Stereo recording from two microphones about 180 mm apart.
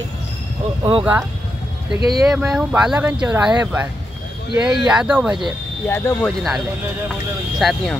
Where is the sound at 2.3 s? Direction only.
5° right (ahead or behind).